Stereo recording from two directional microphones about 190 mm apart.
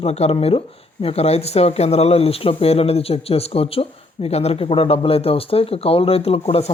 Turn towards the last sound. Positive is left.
turn(degrees=30)  # may be behind; listen again after turning